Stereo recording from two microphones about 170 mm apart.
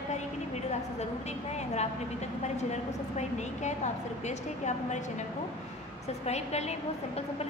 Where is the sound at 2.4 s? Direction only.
40° left (ahead or behind).